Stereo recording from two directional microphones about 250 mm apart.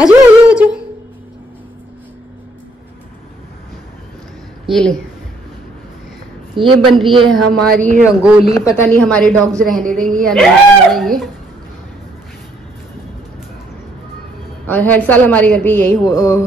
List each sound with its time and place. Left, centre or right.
0.0 s speech: centre
4.6 s speech: centre
6.5 s a woman's voice: centre
7.2 s speech: centre
8.6 s speech: centre
14.7 s a woman's voice: centre